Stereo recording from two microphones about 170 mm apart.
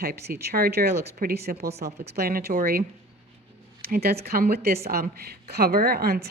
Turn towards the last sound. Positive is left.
turn(degrees=-65)  # may be behind; listen again after turning